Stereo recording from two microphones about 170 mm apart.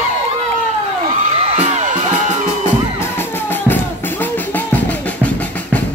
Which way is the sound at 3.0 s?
10° left (ahead or behind).